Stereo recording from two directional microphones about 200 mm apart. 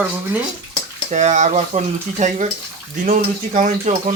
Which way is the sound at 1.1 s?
35° right (ahead or behind).